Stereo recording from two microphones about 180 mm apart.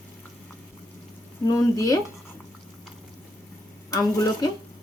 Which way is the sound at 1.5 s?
20° left (ahead or behind).